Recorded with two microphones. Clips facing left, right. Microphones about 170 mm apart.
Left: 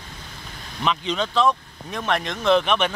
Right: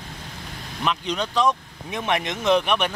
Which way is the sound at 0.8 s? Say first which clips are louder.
Left 1 dB; 5° right (ahead or behind).